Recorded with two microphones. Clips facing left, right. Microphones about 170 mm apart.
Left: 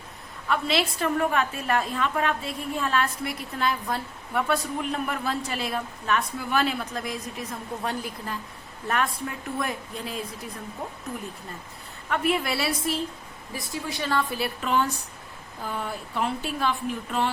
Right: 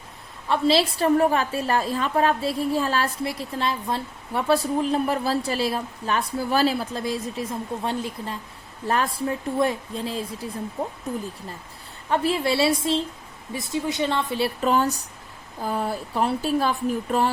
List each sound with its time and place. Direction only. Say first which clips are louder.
0.4 s a woman's voice: right 5 dB; 30° right (ahead or behind)
12.0 s a woman's voice: right 3 dB; 30° right (ahead or behind)